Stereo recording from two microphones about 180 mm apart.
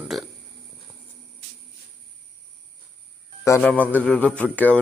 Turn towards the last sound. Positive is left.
turn(degrees=10)  # may be behind; listen again after turning